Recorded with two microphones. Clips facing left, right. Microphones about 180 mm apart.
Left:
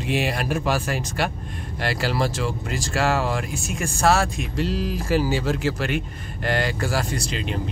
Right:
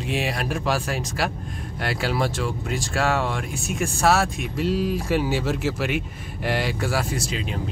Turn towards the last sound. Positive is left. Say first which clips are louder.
# left 1 dB
turn(degrees=0)  # may be behind; listen again after turning